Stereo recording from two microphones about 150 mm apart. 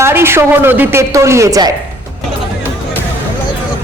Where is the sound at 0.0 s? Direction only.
15° right (ahead or behind).